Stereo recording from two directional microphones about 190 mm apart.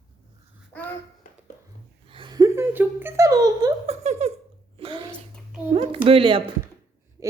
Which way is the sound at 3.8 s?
35° right (ahead or behind).